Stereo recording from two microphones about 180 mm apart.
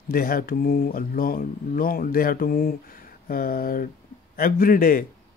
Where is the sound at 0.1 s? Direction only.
55° left (ahead or behind).